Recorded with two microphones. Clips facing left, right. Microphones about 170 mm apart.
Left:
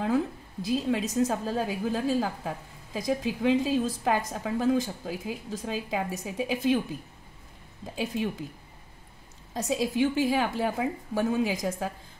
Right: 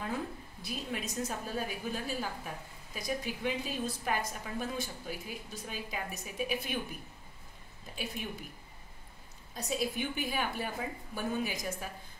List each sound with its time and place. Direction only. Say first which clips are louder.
0.0 s a woman's voice: left 10 dB; 90° left
7.8 s a woman's voice: left 10 dB; 90° left
9.5 s a woman's voice: left 6 dB; 90° left